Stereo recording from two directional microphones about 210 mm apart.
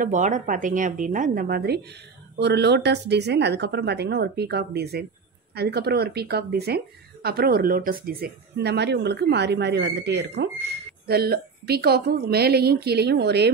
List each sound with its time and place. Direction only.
0.0 s a woman's voice: 35° right (ahead or behind); by 13.5 s 50° right (ahead or behind)